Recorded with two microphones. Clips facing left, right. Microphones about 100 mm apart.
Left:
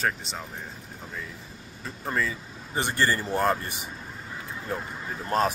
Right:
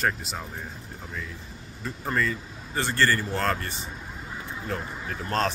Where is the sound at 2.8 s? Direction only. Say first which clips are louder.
Right 1 dB; 15° left (ahead or behind).